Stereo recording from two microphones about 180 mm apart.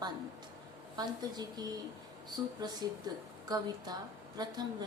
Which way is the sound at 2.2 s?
20° right (ahead or behind).